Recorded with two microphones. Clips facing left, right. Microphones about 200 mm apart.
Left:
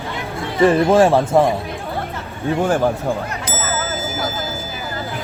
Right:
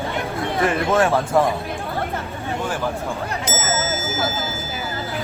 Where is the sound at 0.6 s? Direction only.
30° left (ahead or behind).